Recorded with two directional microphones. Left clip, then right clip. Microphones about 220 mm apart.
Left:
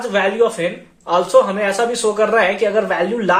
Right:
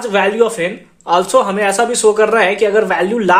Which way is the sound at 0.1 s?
50° right (ahead or behind).